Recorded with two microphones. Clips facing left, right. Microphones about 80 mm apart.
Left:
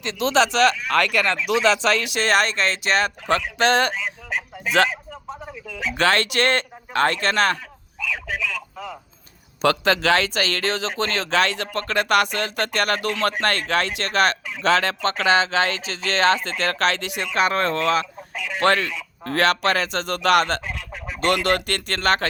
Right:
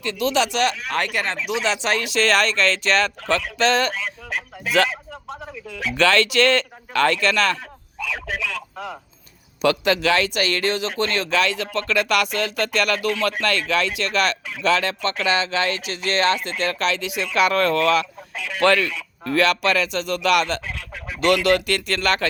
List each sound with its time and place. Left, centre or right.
0.0 s speech: left
0.9 s speech: left
1.6 s speech: left
2.2 s speech: left
2.8 s speech: centre
3.6 s speech: left
4.9 s a sound: centre
5.7 s speech: left
7.9 s a sound: centre
9.6 s speech: left
16.7 s speech: left
17.3 s speech: left